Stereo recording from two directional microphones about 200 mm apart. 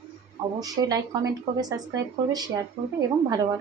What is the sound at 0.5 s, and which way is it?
A woman's voice, 20° right (ahead or behind).